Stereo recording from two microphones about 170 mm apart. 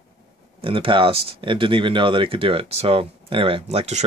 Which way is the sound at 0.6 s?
30° right (ahead or behind).